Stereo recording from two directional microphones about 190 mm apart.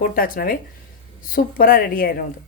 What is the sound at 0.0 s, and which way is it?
A woman's voice, 50° left (ahead or behind).